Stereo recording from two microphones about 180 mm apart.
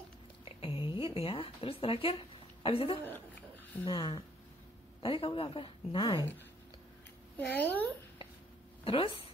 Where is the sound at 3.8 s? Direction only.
25° left (ahead or behind).